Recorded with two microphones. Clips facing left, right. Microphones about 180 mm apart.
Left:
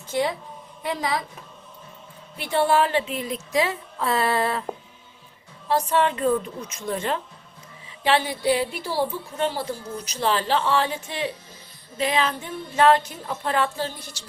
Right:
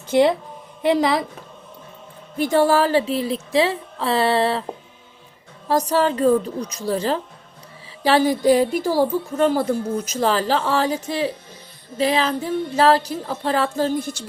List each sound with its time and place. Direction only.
0.1 s a woman's voice: 70° right (ahead or behind)
2.4 s speech: 40° right (ahead or behind)
5.6 s a woman's voice: 40° right (ahead or behind)